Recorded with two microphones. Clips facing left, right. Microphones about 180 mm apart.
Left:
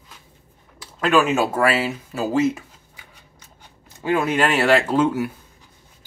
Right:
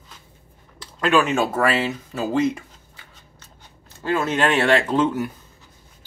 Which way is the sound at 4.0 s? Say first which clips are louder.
Left 1 dB; 15° left (ahead or behind).